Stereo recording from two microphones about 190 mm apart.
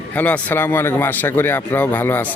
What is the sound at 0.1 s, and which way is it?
Speech, 10° left (ahead or behind).